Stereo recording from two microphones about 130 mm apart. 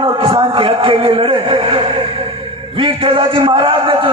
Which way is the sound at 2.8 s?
45° right (ahead or behind).